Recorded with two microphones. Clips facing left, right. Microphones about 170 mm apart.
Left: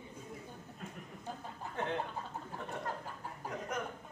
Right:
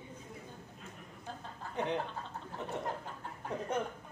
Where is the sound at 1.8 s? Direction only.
15° right (ahead or behind).